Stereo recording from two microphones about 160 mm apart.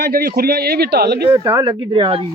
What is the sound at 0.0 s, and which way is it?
A man's voice, 70° right (ahead or behind).